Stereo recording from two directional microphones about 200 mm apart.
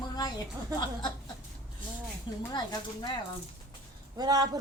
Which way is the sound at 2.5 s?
20° left (ahead or behind).